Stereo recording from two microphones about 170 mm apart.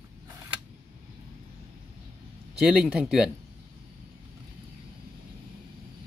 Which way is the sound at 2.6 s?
5° right (ahead or behind).